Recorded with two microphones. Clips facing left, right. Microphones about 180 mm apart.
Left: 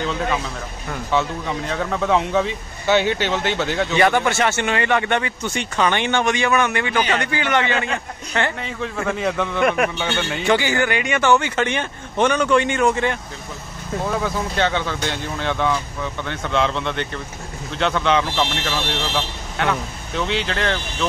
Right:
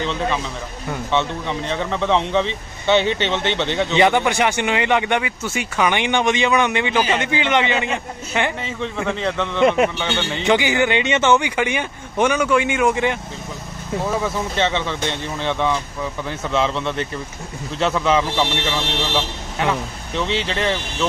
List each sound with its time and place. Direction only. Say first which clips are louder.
0.0 s speech: even; 5° left (ahead or behind)
3.9 s a man's voice: right 1 dB; 20° right (ahead or behind)
8.6 s speech: right 1 dB; centre (ahead or behind)
9.6 s a man's voice: right 4 dB; 25° right (ahead or behind)
9.9 s speech: even; 10° left (ahead or behind)
10.4 s a man's voice: right 2 dB; 15° right (ahead or behind)
13.9 s speech: right 1 dB; 5° right (ahead or behind)
20.2 s speech: right 1 dB; centre (ahead or behind)